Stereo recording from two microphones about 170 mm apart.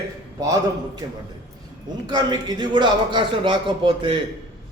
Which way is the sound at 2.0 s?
25° right (ahead or behind).